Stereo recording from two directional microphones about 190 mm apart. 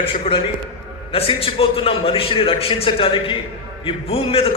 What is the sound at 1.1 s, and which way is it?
A man's voice, 30° left (ahead or behind).